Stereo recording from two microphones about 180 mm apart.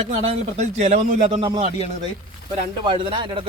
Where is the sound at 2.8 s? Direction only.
30° right (ahead or behind).